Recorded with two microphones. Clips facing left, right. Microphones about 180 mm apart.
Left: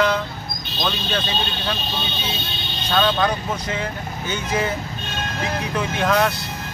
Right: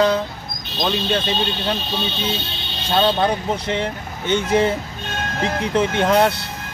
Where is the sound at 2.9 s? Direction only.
30° right (ahead or behind).